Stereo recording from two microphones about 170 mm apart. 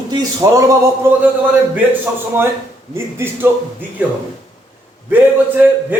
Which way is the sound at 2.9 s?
15° right (ahead or behind).